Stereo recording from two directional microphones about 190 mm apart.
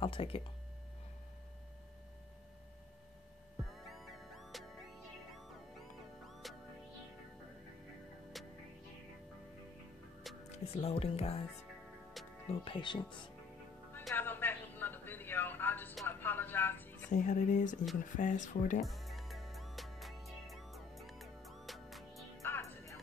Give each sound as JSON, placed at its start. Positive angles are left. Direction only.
{"t": 0.0, "sound": "speech", "side_deg": 25}
{"t": 3.9, "sound": "music", "side_deg": 0}
{"t": 6.4, "sound": "music", "side_deg": 0}
{"t": 10.5, "sound": "speech", "side_deg": 35}
{"t": 12.4, "sound": "speech", "side_deg": 25}
{"t": 13.9, "sound": "a sound", "side_deg": 10}
{"t": 17.1, "sound": "speech", "side_deg": 40}
{"t": 18.8, "sound": "music", "side_deg": 0}
{"t": 22.4, "sound": "music", "side_deg": 15}